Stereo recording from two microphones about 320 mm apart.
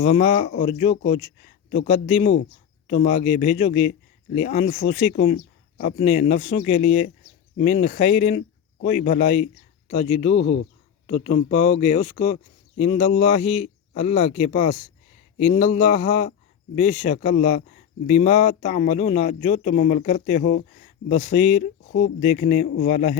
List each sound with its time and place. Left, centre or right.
0.0 s a man's voice: left
10.3 s speech: left
11.0 s a man's voice: centre